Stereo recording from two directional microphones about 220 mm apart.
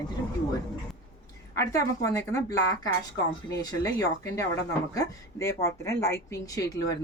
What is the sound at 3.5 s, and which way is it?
A woman's voice, 15° left (ahead or behind).